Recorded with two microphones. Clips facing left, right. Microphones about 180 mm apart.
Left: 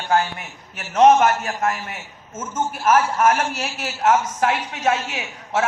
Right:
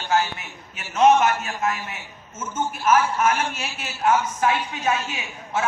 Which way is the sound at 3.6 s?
75° left (ahead or behind).